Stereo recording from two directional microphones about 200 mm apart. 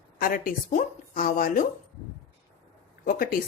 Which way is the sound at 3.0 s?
45° left (ahead or behind).